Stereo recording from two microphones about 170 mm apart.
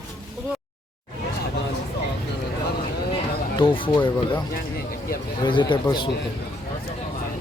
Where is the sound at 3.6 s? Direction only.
30° left (ahead or behind).